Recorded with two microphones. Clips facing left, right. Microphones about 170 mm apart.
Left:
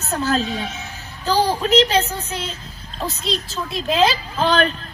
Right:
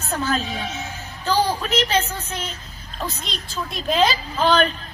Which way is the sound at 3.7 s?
Centre (ahead or behind).